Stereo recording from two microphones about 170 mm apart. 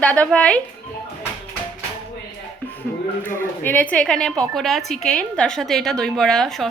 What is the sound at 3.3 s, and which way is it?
A woman's voice, 15° left (ahead or behind).